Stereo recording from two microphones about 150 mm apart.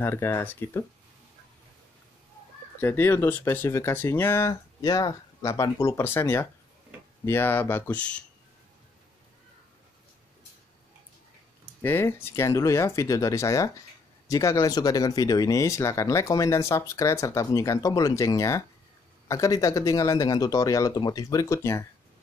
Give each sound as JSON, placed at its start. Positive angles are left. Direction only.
{"t": 0.0, "sound": "speech", "side_deg": 15}
{"t": 2.8, "sound": "speech", "side_deg": 15}
{"t": 11.8, "sound": "speech", "side_deg": 15}